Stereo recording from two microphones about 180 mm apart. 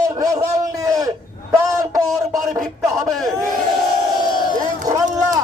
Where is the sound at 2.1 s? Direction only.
Centre (ahead or behind).